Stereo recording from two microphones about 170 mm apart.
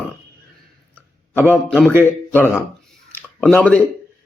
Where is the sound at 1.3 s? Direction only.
10° right (ahead or behind).